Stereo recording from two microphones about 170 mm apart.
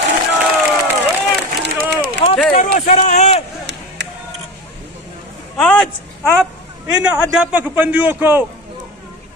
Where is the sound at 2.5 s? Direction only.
50° left (ahead or behind).